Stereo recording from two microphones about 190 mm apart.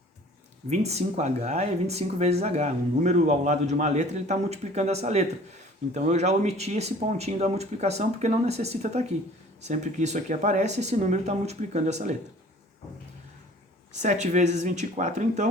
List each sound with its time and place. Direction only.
0.7 s speech: 35° right (ahead or behind)
13.9 s speech: 40° right (ahead or behind)